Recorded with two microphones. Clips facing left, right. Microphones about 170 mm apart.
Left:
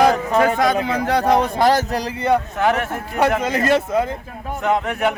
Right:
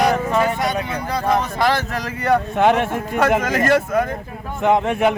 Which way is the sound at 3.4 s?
25° left (ahead or behind).